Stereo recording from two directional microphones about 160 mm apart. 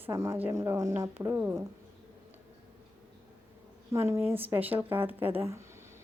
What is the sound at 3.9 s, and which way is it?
Speech, 15° right (ahead or behind).